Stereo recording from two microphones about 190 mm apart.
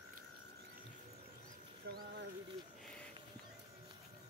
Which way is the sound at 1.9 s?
60° right (ahead or behind).